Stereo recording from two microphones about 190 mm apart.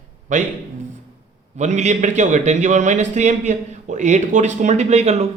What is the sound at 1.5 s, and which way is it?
A man's voice, 40° right (ahead or behind).